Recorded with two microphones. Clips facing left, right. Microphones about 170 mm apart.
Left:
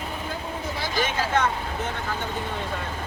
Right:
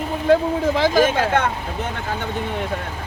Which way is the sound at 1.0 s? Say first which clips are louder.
Right 6 dB; 55° right (ahead or behind).